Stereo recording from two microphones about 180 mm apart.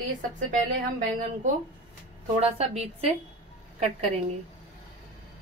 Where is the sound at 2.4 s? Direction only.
35° right (ahead or behind).